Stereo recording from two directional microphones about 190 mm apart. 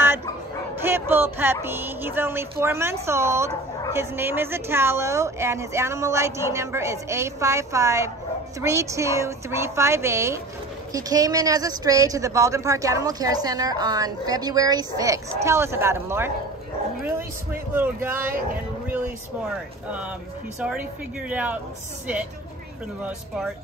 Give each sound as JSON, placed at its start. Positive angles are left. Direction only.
{"t": 0.8, "sound": "a woman's voice", "side_deg": -10}
{"t": 17.7, "sound": "a woman's voice", "side_deg": -10}
{"t": 21.3, "sound": "a woman's voice", "side_deg": -10}
{"t": 23.0, "sound": "speech", "side_deg": -5}